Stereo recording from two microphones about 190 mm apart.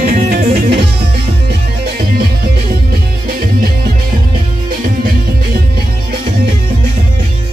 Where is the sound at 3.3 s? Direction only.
50° right (ahead or behind).